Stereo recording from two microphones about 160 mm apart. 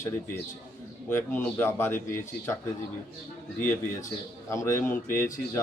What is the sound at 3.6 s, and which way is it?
Speech, 15° left (ahead or behind).